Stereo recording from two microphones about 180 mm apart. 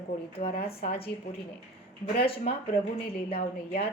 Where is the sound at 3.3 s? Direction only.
35° left (ahead or behind).